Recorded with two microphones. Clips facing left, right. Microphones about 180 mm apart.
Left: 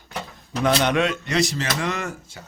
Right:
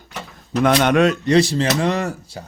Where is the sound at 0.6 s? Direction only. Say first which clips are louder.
Right 5 dB; 50° right (ahead or behind); by 2.5 s 35° right (ahead or behind).